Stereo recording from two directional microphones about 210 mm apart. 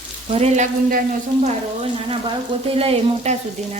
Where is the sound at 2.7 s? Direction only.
30° right (ahead or behind).